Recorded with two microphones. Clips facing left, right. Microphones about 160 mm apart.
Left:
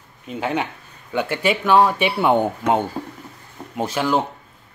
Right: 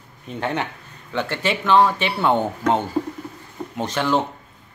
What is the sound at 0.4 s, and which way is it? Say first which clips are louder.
Speech: left 1 dB; 10° left (ahead or behind).